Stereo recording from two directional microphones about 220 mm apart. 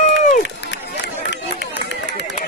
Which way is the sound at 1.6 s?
55° left (ahead or behind).